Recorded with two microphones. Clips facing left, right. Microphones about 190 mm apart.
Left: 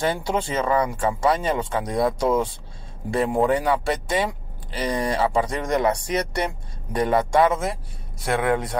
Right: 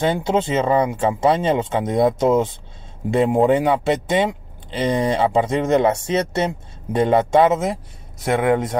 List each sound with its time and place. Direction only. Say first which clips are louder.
0.0 s speech: right 5 dB; 20° right (ahead or behind)